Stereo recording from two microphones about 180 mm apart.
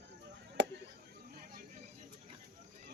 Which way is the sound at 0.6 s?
90° right.